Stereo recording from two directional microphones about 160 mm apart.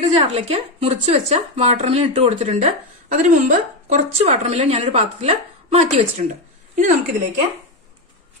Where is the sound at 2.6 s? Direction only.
50° right (ahead or behind).